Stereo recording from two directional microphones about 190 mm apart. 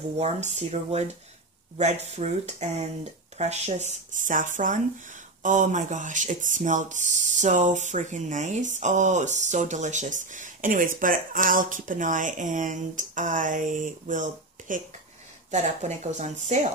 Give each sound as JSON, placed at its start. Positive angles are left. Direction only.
{"t": 0.2, "sound": "speech", "side_deg": -35}